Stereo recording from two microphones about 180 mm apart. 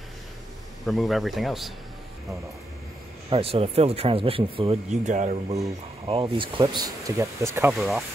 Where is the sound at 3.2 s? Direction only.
35° right (ahead or behind).